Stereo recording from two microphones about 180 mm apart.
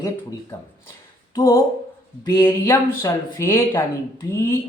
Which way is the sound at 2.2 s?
15° left (ahead or behind).